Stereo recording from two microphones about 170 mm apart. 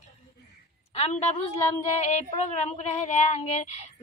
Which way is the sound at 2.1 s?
40° left (ahead or behind).